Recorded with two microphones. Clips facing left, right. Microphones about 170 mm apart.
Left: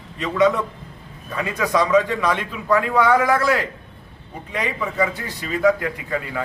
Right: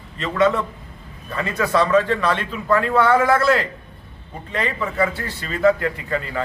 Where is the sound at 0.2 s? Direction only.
15° left (ahead or behind).